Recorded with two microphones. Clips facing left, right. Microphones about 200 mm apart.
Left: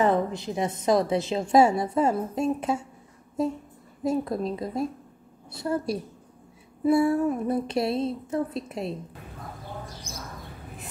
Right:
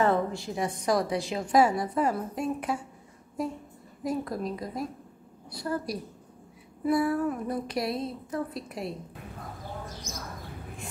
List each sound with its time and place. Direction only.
0.0 s a woman's voice: 20° left (ahead or behind)